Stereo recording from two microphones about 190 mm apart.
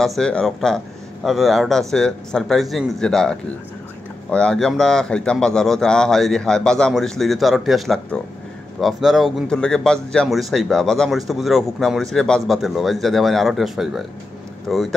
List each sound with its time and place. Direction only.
0.0 s a man's voice: 5° left (ahead or behind)